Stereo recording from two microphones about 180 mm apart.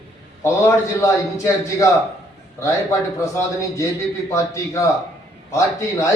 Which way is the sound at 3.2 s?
15° left (ahead or behind).